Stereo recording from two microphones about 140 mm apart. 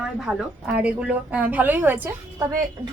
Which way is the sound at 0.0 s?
5° right (ahead or behind).